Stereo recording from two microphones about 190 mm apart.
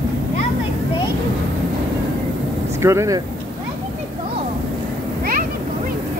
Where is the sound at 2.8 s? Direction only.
15° right (ahead or behind).